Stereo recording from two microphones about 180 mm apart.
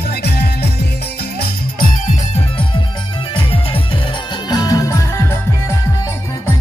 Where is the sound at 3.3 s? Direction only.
30° left (ahead or behind).